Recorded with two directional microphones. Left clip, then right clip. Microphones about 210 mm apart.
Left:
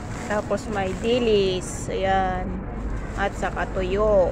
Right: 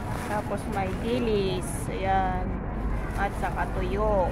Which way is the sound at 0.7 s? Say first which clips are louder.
Left 5 dB; 25° left (ahead or behind).